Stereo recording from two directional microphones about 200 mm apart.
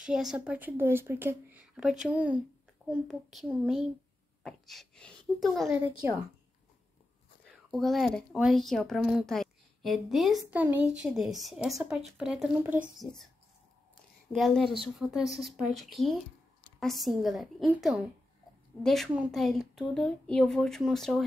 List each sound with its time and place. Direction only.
0.0 s a woman's voice: 5° right (ahead or behind)
7.4 s a woman's voice: centre (ahead or behind)
14.3 s a woman's voice: centre (ahead or behind)